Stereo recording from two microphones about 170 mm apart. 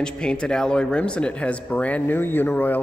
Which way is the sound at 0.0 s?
5° left (ahead or behind).